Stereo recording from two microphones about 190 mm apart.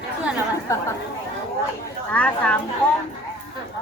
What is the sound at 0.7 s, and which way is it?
Speech, 15° left (ahead or behind).